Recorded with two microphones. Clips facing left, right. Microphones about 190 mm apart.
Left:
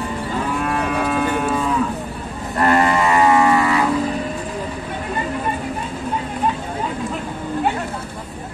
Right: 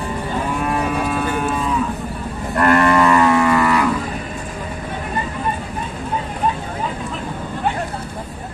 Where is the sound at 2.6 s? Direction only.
65° right (ahead or behind).